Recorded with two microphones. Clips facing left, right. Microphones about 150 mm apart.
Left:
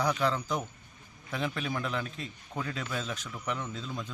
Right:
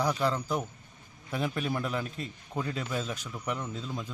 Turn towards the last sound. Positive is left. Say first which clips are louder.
# right 1 dB
turn(degrees=-10)  # may be behind; listen again after turning